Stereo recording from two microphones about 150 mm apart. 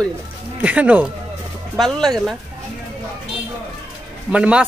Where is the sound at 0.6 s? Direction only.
10° right (ahead or behind).